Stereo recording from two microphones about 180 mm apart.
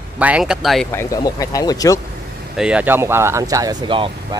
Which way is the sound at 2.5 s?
5° right (ahead or behind).